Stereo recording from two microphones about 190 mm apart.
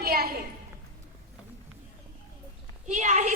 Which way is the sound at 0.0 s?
55° right (ahead or behind).